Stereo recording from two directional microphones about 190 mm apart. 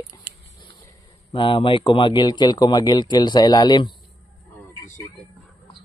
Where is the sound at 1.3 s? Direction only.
25° left (ahead or behind).